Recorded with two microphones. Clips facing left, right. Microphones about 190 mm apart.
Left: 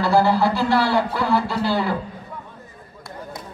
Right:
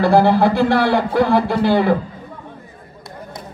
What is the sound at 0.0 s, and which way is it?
A man's voice, 55° right (ahead or behind).